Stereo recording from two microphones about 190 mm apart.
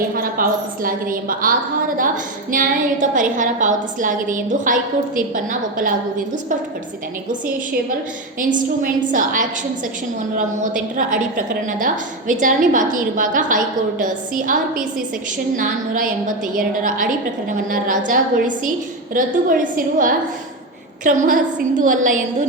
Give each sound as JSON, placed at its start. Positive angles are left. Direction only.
{"t": 0.2, "sound": "a woman's voice", "side_deg": -50}
{"t": 8.4, "sound": "a woman's voice", "side_deg": -45}